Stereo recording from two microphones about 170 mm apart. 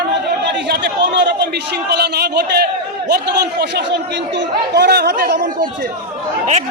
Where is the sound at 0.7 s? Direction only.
90° right.